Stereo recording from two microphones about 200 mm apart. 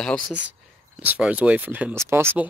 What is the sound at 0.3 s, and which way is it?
Speech, 5° right (ahead or behind).